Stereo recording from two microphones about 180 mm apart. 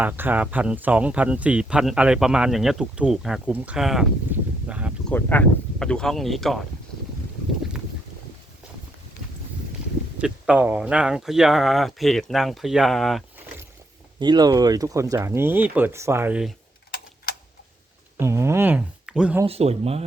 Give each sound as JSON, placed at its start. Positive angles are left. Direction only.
{"t": 0.0, "sound": "speech", "side_deg": -10}
{"t": 5.0, "sound": "speech", "side_deg": 10}
{"t": 10.2, "sound": "speech", "side_deg": -5}
{"t": 14.2, "sound": "speech", "side_deg": -25}
{"t": 18.2, "sound": "speech", "side_deg": -15}
{"t": 19.5, "sound": "speech", "side_deg": -35}